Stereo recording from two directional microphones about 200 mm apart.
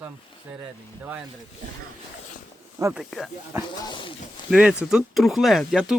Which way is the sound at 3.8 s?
25° left (ahead or behind).